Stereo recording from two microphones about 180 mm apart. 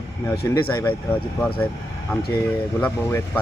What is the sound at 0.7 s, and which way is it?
Speech, 15° left (ahead or behind).